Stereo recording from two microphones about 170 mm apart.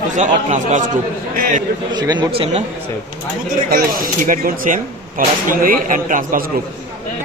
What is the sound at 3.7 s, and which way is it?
A man's voice, 55° right (ahead or behind).